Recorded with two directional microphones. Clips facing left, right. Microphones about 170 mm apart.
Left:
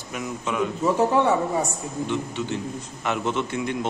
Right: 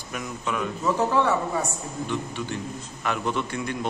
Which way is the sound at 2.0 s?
20° left (ahead or behind).